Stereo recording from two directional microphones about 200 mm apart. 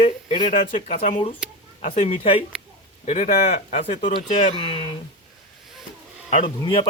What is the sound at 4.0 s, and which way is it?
Speech, 25° left (ahead or behind).